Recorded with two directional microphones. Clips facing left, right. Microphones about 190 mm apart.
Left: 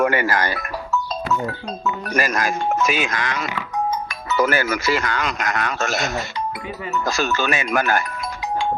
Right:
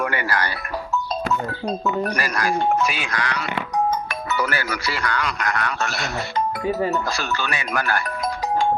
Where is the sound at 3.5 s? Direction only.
60° right (ahead or behind).